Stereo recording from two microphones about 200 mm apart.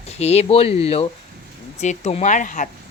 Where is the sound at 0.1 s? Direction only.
30° left (ahead or behind).